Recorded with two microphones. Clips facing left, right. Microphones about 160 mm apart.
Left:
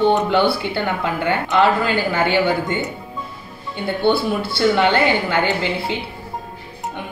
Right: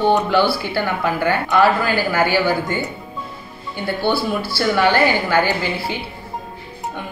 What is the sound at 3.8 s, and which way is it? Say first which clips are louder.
Speech: left 2 dB; 20° left (ahead or behind).